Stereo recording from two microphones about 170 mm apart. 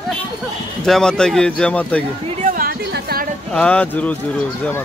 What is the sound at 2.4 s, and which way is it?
Music, 55° right (ahead or behind).